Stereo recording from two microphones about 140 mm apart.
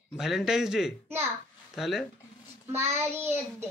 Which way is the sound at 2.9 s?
15° right (ahead or behind).